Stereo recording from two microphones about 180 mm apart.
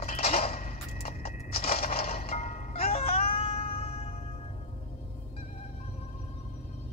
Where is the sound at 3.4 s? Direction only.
35° left (ahead or behind).